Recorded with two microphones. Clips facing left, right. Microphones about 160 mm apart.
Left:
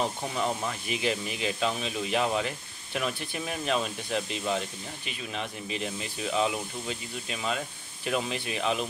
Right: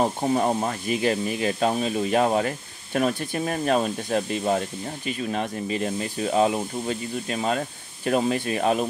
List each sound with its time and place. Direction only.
0.0 s speech: 45° right (ahead or behind)